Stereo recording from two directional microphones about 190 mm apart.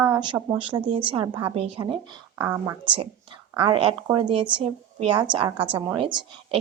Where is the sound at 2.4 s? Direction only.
15° right (ahead or behind).